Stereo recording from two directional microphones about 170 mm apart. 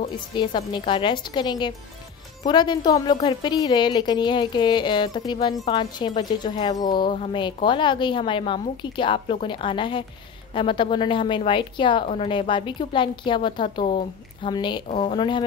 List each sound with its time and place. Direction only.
0.0 s a woman's voice: 30° left (ahead or behind)